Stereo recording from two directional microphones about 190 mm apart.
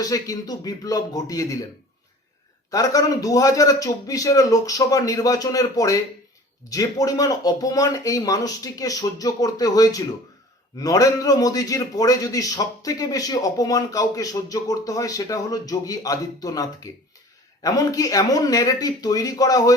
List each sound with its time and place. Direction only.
0.0 s a man's voice: 20° left (ahead or behind)
2.6 s a man's voice: 20° left (ahead or behind)